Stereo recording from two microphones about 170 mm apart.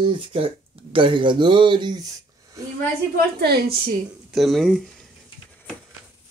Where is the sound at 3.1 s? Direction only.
65° right (ahead or behind).